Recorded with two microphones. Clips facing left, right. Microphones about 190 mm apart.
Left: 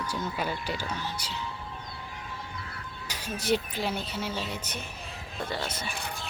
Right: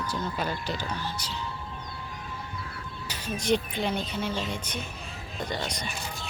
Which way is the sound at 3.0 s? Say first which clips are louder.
Right 2 dB; 10° left (ahead or behind).